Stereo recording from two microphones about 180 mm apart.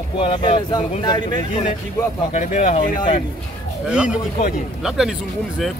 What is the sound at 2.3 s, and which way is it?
Speech, 45° left (ahead or behind).